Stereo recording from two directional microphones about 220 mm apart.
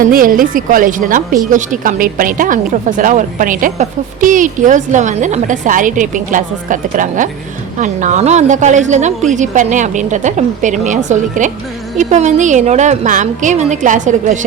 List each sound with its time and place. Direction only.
0.0 s a woman's voice: 40° right (ahead or behind)